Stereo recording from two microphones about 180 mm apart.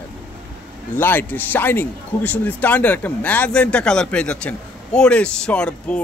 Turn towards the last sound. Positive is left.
turn(degrees=5)  # may be behind; listen again after turning